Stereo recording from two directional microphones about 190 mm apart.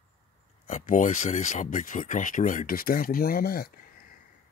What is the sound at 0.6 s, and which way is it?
Speech, 45° left (ahead or behind).